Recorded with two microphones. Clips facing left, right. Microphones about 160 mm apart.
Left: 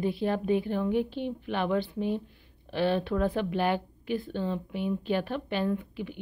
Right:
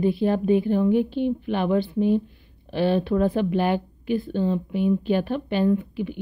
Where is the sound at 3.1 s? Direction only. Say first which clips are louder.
Right 6 dB; 25° right (ahead or behind).